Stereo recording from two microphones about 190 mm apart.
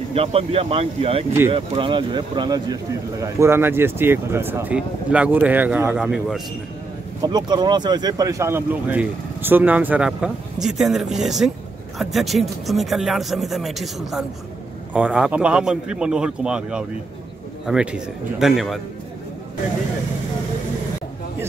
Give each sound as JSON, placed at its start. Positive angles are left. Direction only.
{"t": 0.1, "sound": "speech", "side_deg": -30}
{"t": 7.2, "sound": "speech", "side_deg": -20}